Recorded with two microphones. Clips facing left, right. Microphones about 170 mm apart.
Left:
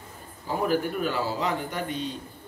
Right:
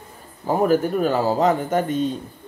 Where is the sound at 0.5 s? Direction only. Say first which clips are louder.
Right 7 dB; 45° right (ahead or behind).